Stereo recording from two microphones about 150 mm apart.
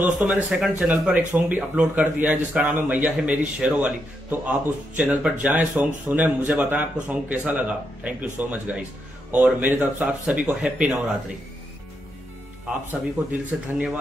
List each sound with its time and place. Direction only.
0.0 s speech: 10° right (ahead or behind)
13.3 s speech: 10° right (ahead or behind)